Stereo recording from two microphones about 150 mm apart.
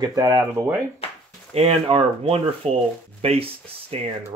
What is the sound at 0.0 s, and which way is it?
Speech, 25° right (ahead or behind).